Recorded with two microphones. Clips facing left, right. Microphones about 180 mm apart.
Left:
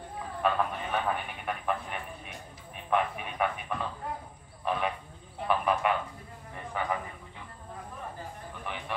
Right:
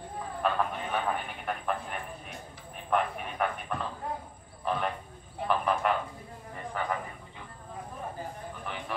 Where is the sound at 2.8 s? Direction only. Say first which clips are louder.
Even; centre (ahead or behind).